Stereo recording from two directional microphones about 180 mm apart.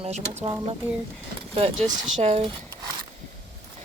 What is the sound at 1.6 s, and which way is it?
Speech, 35° right (ahead or behind).